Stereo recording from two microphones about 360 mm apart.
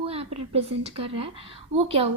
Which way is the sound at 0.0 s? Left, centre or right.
Centre.